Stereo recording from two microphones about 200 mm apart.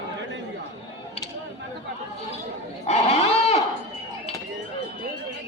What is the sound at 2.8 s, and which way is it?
Goat, 30° left (ahead or behind).